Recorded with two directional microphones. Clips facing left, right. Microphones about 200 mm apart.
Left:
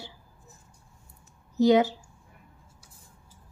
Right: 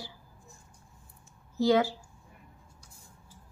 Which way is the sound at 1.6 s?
20° left (ahead or behind).